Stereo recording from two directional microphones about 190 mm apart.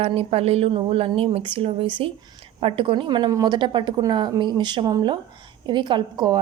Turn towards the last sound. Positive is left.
turn(degrees=-25)  # may be behind; listen again after turning